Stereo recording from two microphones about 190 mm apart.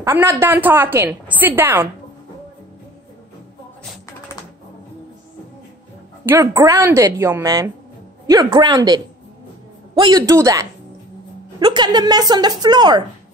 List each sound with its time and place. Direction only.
0.0 s speech: 10° right (ahead or behind)
6.2 s a woman's voice: 15° right (ahead or behind)